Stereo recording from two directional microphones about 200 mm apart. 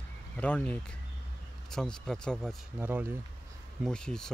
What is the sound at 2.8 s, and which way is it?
Speech, 10° right (ahead or behind).